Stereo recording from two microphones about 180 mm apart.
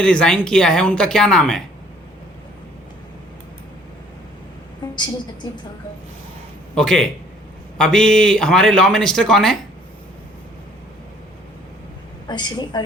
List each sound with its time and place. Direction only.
0.0 s a man's voice: 5° left (ahead or behind)
6.7 s a man's voice: 5° left (ahead or behind)
12.3 s a woman's voice: 25° left (ahead or behind)